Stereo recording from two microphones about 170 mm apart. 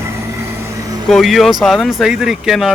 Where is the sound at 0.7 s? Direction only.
20° right (ahead or behind).